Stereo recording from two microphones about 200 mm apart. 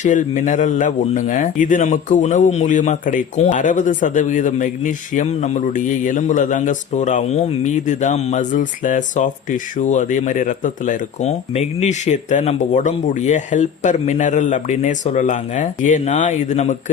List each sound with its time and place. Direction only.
0.0 s speech: 40° left (ahead or behind)